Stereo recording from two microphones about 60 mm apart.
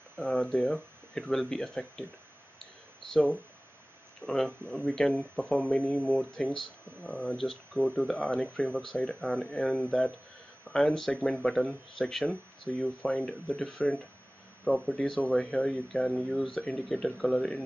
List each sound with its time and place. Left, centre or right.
0.2 s speech: centre
3.1 s speech: centre
12.3 s speech: left